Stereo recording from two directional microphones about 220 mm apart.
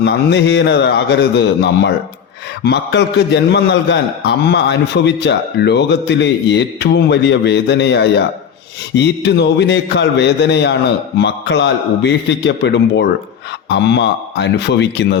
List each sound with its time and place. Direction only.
0.0 s a man's voice: 50° left (ahead or behind)